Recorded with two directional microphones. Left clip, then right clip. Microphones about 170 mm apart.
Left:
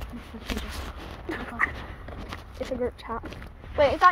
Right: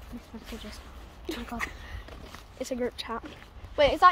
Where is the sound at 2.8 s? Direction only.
30° right (ahead or behind).